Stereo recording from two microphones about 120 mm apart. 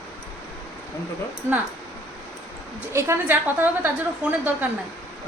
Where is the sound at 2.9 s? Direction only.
20° right (ahead or behind).